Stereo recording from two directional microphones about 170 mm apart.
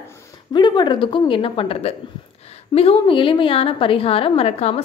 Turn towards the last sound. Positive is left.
turn(degrees=35)  # may be behind; listen again after turning